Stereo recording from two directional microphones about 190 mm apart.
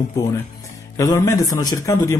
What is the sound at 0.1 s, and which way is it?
Speech, 15° left (ahead or behind).